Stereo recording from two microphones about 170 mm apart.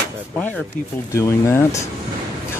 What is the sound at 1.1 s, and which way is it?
Speech, 15° left (ahead or behind).